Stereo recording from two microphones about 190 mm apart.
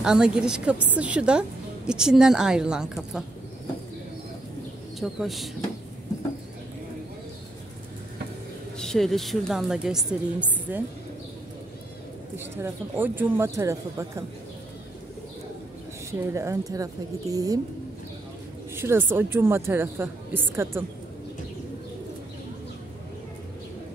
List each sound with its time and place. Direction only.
0.0 s a woman's voice: 5° right (ahead or behind)
5.0 s a woman's voice: centre (ahead or behind)
8.7 s a woman's voice: centre (ahead or behind)
12.4 s a woman's voice: 10° right (ahead or behind)
16.1 s a woman's voice: 15° right (ahead or behind)
18.8 s a woman's voice: 10° right (ahead or behind)